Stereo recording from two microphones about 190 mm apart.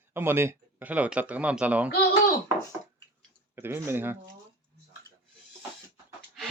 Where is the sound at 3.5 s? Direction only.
10° right (ahead or behind).